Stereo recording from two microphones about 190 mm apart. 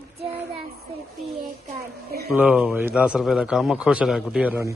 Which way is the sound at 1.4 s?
45° right (ahead or behind).